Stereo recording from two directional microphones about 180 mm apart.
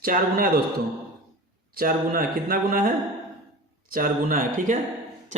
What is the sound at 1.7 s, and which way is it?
A man's voice, 55° right (ahead or behind).